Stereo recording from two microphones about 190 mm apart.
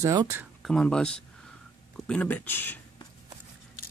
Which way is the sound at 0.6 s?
5° left (ahead or behind).